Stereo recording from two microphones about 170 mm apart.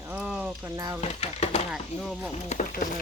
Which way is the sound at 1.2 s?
40° left (ahead or behind).